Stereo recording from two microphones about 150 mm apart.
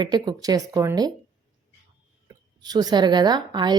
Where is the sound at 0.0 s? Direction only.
25° right (ahead or behind).